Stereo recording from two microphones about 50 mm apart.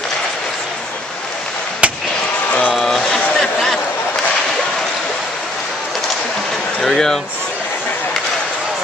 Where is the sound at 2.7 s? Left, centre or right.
Centre.